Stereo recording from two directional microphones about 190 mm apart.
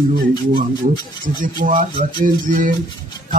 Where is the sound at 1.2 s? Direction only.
45° right (ahead or behind).